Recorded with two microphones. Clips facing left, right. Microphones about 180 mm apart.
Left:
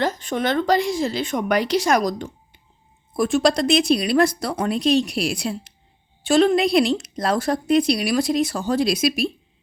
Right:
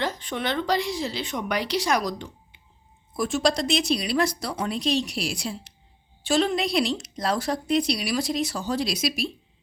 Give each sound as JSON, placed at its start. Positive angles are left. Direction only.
{"t": 0.0, "sound": "a woman's voice", "side_deg": 45}
{"t": 3.1, "sound": "a woman's voice", "side_deg": 55}